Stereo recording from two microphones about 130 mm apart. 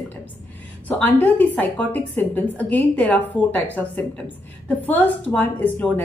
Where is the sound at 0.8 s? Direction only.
15° left (ahead or behind).